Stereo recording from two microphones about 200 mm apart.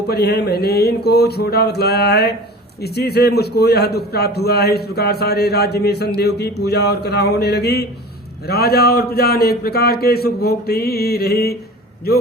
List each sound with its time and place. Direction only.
0.1 s a man's voice: 55° left (ahead or behind)